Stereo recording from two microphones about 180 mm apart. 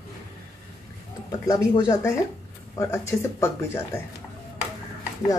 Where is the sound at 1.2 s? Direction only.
20° left (ahead or behind).